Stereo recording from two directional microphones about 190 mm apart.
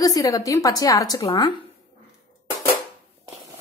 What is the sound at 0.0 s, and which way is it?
A woman's voice, 20° left (ahead or behind).